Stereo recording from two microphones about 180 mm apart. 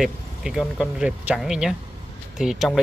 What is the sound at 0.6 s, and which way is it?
Speech, 5° right (ahead or behind).